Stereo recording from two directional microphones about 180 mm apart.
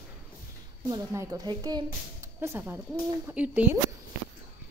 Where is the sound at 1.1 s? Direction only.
20° right (ahead or behind).